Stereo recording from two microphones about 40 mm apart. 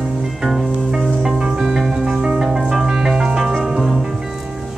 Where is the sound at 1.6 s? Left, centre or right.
Centre.